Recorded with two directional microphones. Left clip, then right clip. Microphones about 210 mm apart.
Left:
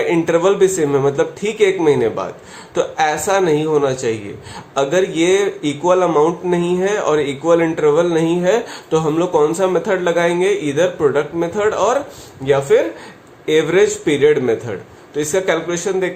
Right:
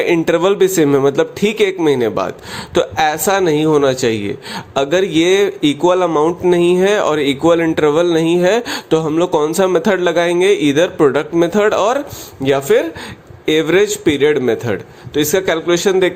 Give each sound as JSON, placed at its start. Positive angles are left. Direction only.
{"t": 0.0, "sound": "a man's voice", "side_deg": -40}